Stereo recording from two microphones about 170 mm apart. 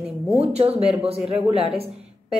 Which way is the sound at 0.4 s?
35° right (ahead or behind).